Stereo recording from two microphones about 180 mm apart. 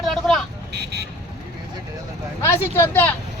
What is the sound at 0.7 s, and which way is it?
Speech, 70° right (ahead or behind).